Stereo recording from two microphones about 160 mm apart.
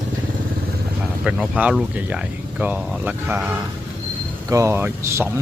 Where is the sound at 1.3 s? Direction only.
5° right (ahead or behind).